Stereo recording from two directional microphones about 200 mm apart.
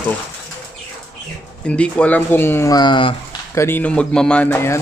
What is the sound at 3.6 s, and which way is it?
Speech, 10° left (ahead or behind).